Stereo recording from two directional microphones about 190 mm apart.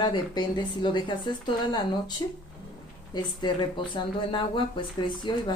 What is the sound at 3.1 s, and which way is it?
Speech, 25° left (ahead or behind).